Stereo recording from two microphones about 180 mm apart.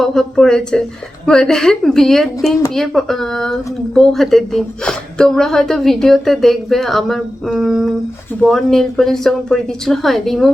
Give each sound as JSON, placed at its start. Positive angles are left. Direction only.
{"t": 0.0, "sound": "a woman's voice", "side_deg": 0}